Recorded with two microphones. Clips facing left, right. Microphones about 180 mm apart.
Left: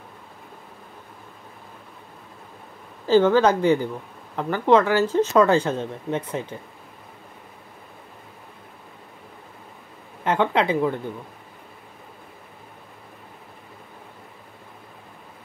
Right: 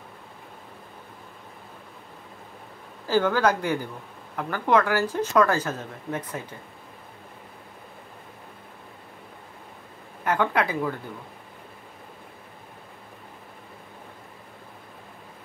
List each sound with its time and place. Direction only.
3.1 s speech: 25° left (ahead or behind)
5.0 s speech: 10° right (ahead or behind)
5.3 s speech: 25° left (ahead or behind)
10.2 s speech: 25° left (ahead or behind)